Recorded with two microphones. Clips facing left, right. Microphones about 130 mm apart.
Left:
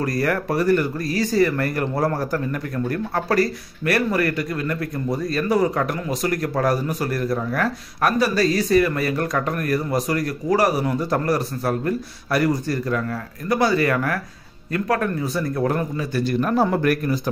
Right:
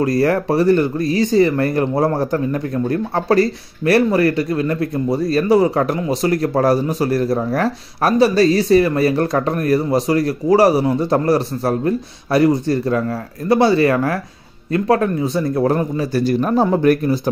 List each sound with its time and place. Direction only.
0.0 s speech: 30° right (ahead or behind)